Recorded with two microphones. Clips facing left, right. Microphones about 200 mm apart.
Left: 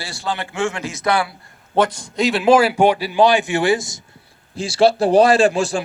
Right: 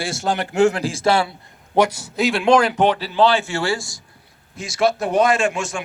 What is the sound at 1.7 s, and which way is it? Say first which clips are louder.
A man's voice: even; 10° right (ahead or behind).